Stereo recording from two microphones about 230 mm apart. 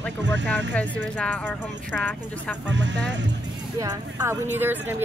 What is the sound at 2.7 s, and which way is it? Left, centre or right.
Speech, right.